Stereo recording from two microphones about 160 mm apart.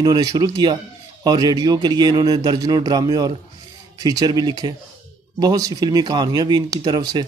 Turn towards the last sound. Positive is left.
turn(degrees=-25)  # may be behind; listen again after turning